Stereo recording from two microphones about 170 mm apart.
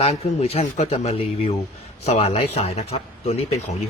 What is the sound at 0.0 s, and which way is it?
Speech, 35° left (ahead or behind).